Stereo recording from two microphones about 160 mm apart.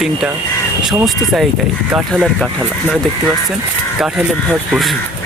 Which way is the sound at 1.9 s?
5° right (ahead or behind).